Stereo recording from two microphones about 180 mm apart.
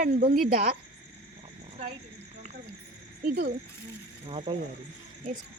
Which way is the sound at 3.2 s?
50° right (ahead or behind).